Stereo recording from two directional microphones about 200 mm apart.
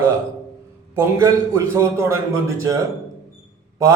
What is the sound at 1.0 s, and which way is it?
Speech, 15° right (ahead or behind).